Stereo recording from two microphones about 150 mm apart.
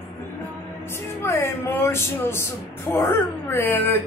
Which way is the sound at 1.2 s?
15° left (ahead or behind).